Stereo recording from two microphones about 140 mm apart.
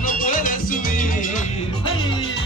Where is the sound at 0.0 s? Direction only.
75° left (ahead or behind).